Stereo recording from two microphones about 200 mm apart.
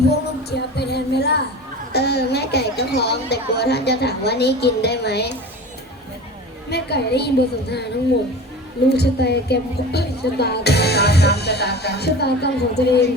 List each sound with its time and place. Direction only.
0.5 s a woman's voice: 55° left (ahead or behind)
6.7 s a woman's voice: 55° left (ahead or behind)
8.9 s a woman's voice: 55° left (ahead or behind)